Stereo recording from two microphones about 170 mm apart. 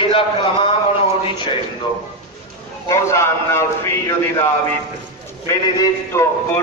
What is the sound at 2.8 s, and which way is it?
A man's voice, 15° left (ahead or behind).